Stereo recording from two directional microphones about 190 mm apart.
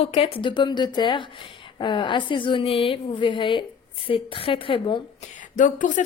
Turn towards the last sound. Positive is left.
turn(degrees=40)  # may be behind; listen again after turning